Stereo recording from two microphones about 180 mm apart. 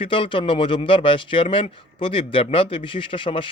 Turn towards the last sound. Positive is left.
turn(degrees=30)  # may be behind; listen again after turning